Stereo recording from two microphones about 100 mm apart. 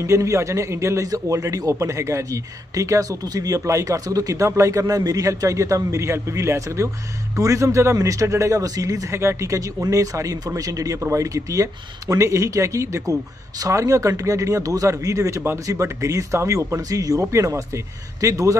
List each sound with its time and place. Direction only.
0.0 s a man's voice: 30° right (ahead or behind)